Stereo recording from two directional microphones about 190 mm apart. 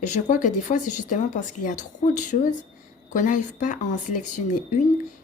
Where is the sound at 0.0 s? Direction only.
40° left (ahead or behind).